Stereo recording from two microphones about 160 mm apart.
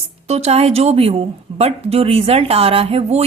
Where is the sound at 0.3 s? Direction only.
40° right (ahead or behind).